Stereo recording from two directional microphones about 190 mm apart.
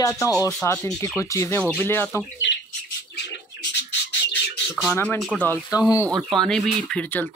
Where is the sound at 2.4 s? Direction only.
70° left (ahead or behind).